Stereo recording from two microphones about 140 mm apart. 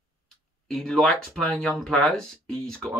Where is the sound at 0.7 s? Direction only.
5° left (ahead or behind).